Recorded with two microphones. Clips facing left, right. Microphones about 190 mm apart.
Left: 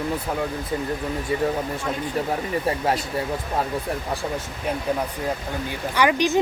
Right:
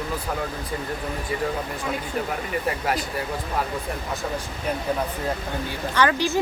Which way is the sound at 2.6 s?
25° left (ahead or behind).